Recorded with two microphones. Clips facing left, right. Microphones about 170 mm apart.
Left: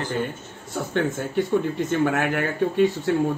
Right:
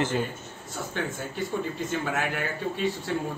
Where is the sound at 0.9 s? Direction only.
60° left (ahead or behind).